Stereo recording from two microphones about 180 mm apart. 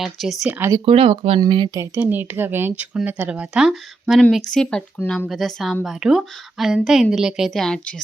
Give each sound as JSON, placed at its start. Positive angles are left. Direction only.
{"t": 0.0, "sound": "a woman's voice", "side_deg": 0}
{"t": 0.9, "sound": "speech", "side_deg": -30}
{"t": 1.8, "sound": "a woman's voice", "side_deg": -10}